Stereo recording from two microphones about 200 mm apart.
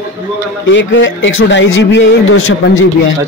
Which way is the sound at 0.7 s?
70° left (ahead or behind).